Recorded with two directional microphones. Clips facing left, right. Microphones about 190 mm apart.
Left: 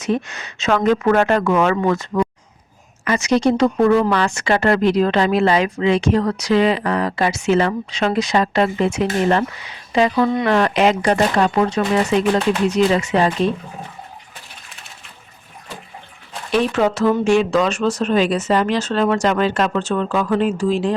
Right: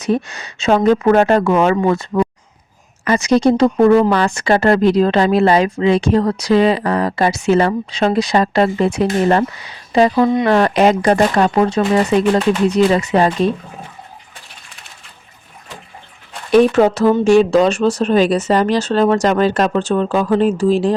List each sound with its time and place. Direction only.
0.0 s speech: 35° right (ahead or behind)
16.5 s speech: 40° right (ahead or behind)